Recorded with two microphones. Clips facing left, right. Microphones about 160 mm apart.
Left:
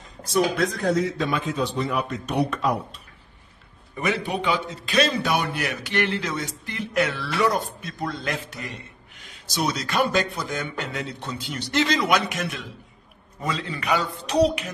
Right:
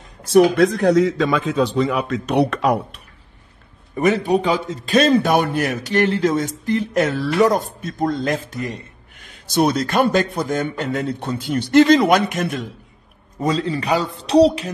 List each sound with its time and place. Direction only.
0.3 s a man's voice: 70° right (ahead or behind)
3.9 s a man's voice: 45° right (ahead or behind)